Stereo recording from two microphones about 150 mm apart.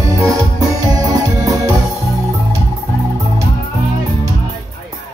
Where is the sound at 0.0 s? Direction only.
20° right (ahead or behind).